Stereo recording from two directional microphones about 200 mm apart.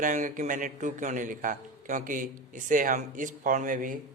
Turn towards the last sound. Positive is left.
turn(degrees=-40)  # may be behind; listen again after turning